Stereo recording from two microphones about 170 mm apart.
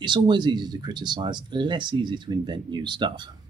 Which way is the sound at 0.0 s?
25° right (ahead or behind).